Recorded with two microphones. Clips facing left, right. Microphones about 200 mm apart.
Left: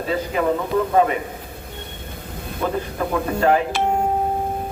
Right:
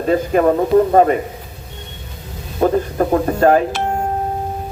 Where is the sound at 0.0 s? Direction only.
50° right (ahead or behind).